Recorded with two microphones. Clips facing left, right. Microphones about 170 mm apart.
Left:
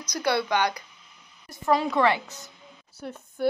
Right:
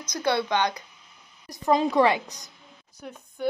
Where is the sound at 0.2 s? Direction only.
20° right (ahead or behind).